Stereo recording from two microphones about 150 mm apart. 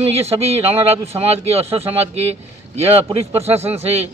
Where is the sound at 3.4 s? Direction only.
45° right (ahead or behind).